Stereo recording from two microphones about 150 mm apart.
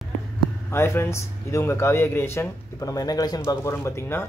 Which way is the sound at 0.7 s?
15° left (ahead or behind).